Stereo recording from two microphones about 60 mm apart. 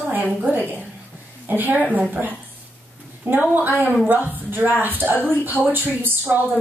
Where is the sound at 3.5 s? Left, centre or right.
Right.